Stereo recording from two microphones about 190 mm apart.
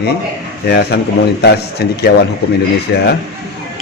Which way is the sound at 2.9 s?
60° left (ahead or behind).